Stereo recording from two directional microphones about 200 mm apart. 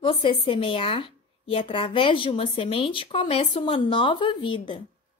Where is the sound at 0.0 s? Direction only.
25° left (ahead or behind).